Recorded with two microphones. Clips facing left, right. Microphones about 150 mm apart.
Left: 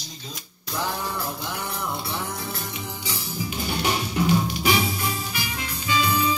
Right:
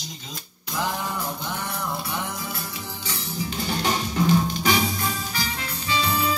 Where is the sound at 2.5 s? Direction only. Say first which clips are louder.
Left 1 dB; 15° left (ahead or behind).